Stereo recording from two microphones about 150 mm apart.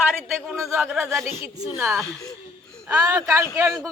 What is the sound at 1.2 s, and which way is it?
Speech, 40° left (ahead or behind).